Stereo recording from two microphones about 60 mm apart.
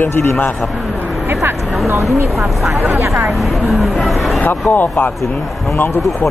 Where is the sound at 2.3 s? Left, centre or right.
Centre.